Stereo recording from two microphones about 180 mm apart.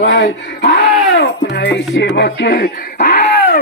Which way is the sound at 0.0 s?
70° left (ahead or behind).